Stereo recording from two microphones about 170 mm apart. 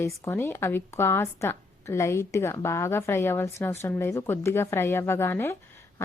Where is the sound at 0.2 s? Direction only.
15° left (ahead or behind).